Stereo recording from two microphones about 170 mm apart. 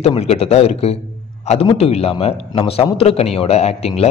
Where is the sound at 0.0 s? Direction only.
40° left (ahead or behind).